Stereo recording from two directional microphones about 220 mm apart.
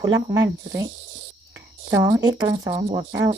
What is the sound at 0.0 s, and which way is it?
Speech, 15° right (ahead or behind).